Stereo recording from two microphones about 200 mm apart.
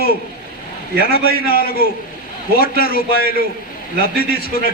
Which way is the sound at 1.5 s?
50° left (ahead or behind).